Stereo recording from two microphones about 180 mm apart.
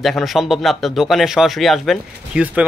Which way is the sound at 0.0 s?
Centre (ahead or behind).